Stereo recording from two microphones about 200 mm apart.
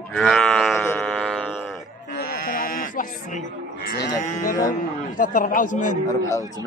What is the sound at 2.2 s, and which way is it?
Livestock, 45° left (ahead or behind).